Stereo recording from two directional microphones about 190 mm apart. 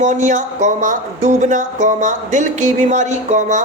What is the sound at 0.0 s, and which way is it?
Speech, 40° right (ahead or behind).